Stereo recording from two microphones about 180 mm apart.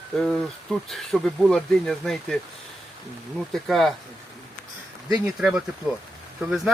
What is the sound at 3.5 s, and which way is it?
Speech, centre (ahead or behind).